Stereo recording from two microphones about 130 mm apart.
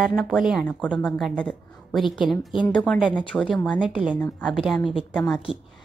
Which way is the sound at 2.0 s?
40° left (ahead or behind).